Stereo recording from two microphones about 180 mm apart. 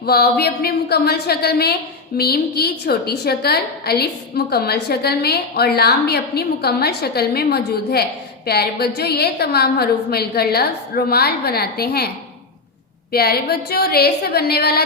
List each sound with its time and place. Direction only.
0.0 s a woman's voice: 60° left (ahead or behind)